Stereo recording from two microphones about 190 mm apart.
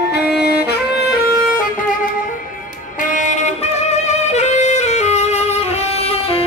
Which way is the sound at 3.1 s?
35° left (ahead or behind).